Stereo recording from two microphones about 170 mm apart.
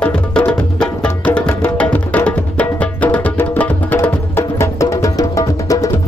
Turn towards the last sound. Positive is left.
turn(degrees=20)  # may be behind; listen again after turning